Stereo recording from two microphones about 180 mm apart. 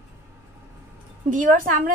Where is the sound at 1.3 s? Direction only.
45° right (ahead or behind).